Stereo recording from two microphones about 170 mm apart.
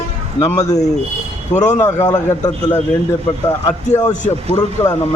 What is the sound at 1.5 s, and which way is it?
Speech, 45° left (ahead or behind).